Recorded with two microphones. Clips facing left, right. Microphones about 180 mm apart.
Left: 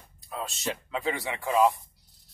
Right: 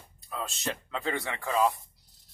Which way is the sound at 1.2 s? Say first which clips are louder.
Left 4 dB; 15° left (ahead or behind).